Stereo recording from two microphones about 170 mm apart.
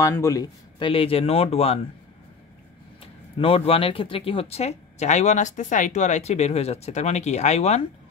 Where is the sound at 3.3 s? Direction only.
35° left (ahead or behind).